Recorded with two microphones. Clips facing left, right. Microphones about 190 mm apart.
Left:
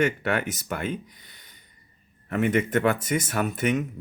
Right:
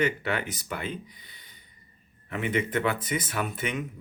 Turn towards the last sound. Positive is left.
turn(degrees=45)  # may be behind; listen again after turning